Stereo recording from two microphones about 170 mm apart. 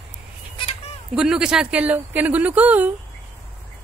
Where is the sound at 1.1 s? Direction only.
5° right (ahead or behind).